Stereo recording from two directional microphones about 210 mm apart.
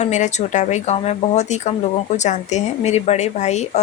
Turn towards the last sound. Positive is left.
turn(degrees=35)  # may be behind; listen again after turning